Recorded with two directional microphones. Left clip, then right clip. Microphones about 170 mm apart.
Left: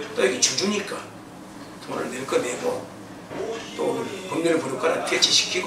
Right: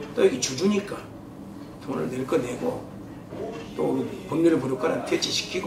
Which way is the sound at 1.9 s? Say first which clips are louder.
Left 1 dB; 15° left (ahead or behind).